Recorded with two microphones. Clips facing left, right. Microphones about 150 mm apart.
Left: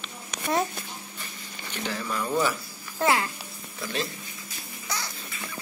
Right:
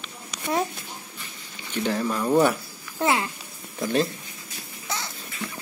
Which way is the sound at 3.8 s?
45° right (ahead or behind).